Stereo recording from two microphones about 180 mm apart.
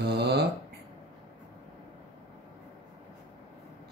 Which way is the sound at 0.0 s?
65° right (ahead or behind).